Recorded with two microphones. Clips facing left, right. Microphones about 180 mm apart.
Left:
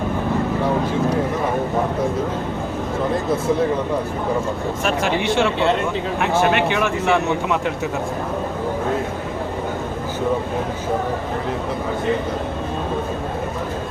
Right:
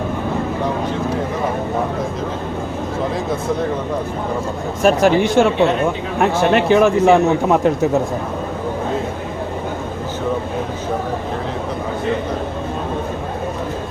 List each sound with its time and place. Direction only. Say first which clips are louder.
4.8 s a man's voice: right 10 dB; 40° right (ahead or behind)